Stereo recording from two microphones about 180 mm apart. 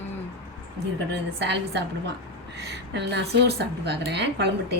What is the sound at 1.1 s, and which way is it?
A woman's voice, 70° right (ahead or behind).